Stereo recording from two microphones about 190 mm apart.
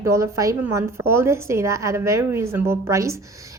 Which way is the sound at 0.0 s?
15° right (ahead or behind).